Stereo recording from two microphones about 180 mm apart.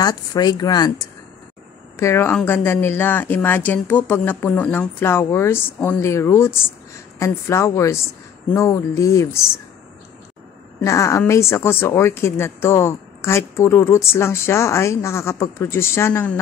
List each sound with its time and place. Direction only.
0.0 s speech: 20° left (ahead or behind)
10.8 s speech: 15° left (ahead or behind)